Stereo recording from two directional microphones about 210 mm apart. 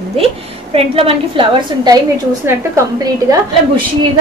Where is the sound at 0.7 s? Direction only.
25° right (ahead or behind).